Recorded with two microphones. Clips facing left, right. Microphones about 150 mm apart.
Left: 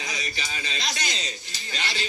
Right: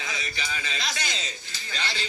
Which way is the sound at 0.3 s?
20° left (ahead or behind).